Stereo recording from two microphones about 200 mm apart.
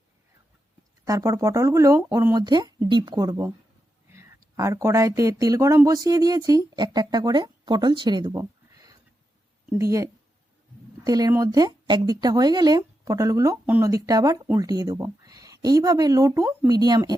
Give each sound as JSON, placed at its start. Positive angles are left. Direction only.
{"t": 1.0, "sound": "speech", "side_deg": -15}
{"t": 4.5, "sound": "speech", "side_deg": -15}
{"t": 11.0, "sound": "speech", "side_deg": -20}